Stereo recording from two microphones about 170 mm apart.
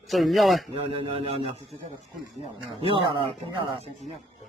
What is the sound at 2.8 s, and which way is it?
Speech, 30° right (ahead or behind).